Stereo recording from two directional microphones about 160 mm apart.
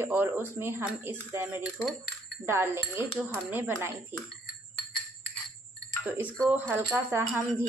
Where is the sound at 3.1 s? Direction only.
5° right (ahead or behind).